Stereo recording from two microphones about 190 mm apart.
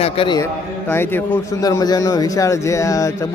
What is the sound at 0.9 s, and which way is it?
A man's voice, 10° left (ahead or behind).